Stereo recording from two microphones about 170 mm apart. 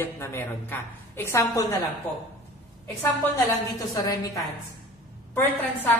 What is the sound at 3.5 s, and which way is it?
Speech, 20° left (ahead or behind).